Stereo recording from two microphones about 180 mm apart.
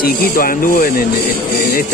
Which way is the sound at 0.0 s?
55° left (ahead or behind).